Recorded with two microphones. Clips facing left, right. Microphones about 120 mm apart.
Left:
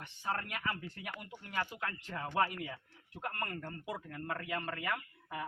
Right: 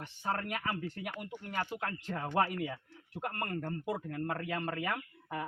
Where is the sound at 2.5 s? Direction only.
45° right (ahead or behind).